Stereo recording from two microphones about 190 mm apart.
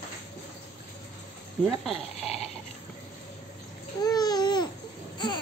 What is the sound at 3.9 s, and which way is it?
Babbling, 20° left (ahead or behind).